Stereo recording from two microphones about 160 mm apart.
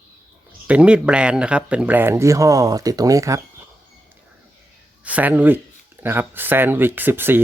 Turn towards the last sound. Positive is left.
turn(degrees=-15)  # may be behind; listen again after turning